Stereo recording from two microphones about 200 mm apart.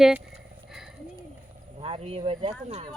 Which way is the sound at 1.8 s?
30° right (ahead or behind).